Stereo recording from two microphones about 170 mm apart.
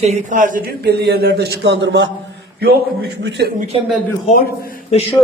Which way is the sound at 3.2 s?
85° right.